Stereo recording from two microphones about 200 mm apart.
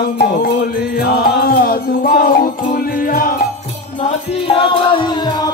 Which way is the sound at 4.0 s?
25° left (ahead or behind).